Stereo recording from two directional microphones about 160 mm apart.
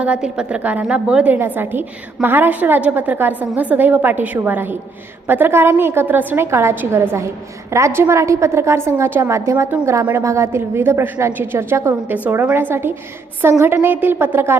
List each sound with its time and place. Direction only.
0.0 s a woman's voice: 5° right (ahead or behind)